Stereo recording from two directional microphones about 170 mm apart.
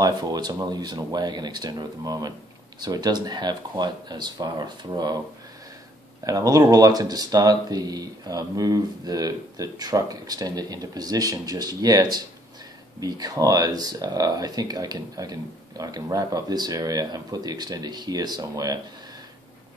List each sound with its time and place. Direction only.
0.0 s speech: 25° right (ahead or behind)
6.2 s speech: 20° right (ahead or behind)